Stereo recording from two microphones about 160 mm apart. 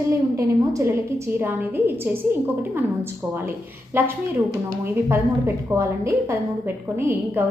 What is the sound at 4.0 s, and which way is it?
A woman's voice, 15° right (ahead or behind).